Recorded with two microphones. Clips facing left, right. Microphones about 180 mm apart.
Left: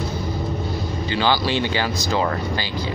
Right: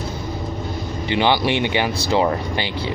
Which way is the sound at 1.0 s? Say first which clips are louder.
Right 3 dB; 20° right (ahead or behind).